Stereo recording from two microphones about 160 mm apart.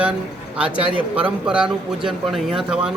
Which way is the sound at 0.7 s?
30° right (ahead or behind).